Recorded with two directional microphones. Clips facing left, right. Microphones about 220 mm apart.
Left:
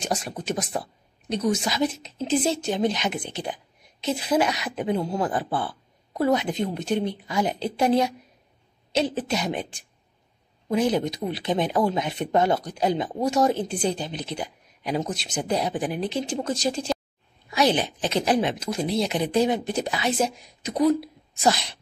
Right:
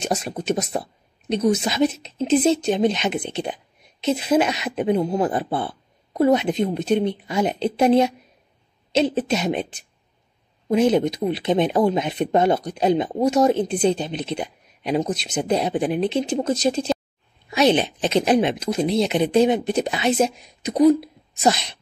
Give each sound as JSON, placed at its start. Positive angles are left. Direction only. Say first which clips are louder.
{"t": 0.0, "sound": "a woman's voice", "louder": "right 4 dB", "side_deg": -25}